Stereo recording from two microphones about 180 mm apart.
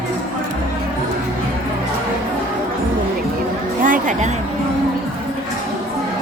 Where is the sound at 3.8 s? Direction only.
45° right (ahead or behind).